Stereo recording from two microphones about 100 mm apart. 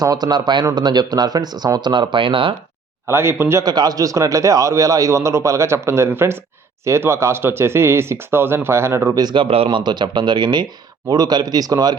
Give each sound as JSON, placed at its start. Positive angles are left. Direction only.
{"t": 0.0, "sound": "speech", "side_deg": -40}
{"t": 3.1, "sound": "speech", "side_deg": -25}
{"t": 3.6, "sound": "a man's voice", "side_deg": -40}
{"t": 9.1, "sound": "speech", "side_deg": -50}
{"t": 9.6, "sound": "a man's voice", "side_deg": -45}